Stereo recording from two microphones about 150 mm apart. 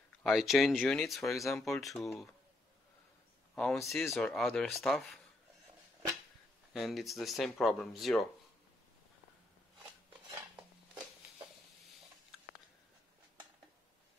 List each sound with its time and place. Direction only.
0.2 s speech: centre (ahead or behind)
3.5 s speech: centre (ahead or behind)
6.7 s speech: centre (ahead or behind)